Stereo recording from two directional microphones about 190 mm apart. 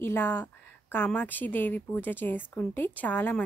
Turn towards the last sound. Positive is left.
turn(degrees=10)  # may be behind; listen again after turning